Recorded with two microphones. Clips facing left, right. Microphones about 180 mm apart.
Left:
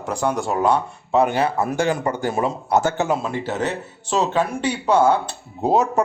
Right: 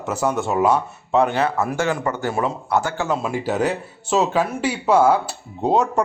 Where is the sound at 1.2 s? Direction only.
10° left (ahead or behind).